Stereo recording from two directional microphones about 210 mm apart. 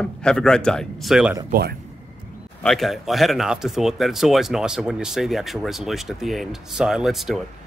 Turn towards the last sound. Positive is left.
turn(degrees=0)  # may be behind; listen again after turning